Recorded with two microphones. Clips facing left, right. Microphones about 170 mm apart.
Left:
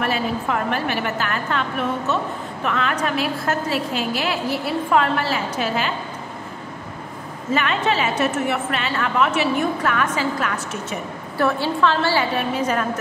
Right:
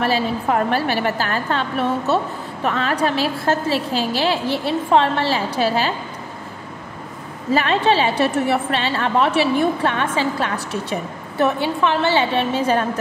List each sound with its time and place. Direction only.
0.0 s a woman's voice: 35° right (ahead or behind)
7.5 s a woman's voice: 35° right (ahead or behind)
11.3 s a woman's voice: 20° right (ahead or behind)